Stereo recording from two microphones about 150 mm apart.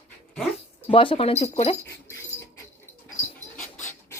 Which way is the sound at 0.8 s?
35° left (ahead or behind).